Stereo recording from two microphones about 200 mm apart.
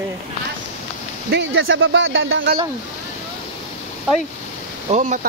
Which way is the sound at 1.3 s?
70° right (ahead or behind).